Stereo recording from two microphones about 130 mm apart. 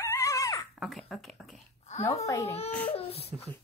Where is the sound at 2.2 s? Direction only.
25° left (ahead or behind).